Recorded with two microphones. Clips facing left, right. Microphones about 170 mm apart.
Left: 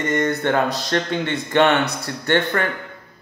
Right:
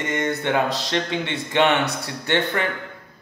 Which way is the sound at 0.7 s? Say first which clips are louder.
Left 2 dB; 45° left (ahead or behind).